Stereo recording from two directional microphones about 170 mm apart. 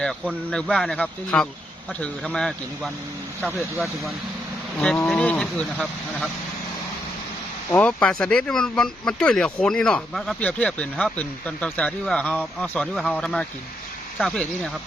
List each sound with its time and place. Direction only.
0.0 s speech: 5° left (ahead or behind)
7.7 s speech: 10° left (ahead or behind)